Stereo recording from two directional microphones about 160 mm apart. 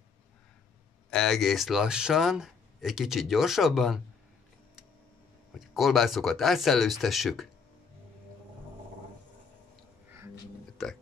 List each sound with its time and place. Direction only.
1.1 s speech: centre (ahead or behind)
5.5 s speech: centre (ahead or behind)
10.0 s music: 15° right (ahead or behind)
10.8 s speech: centre (ahead or behind)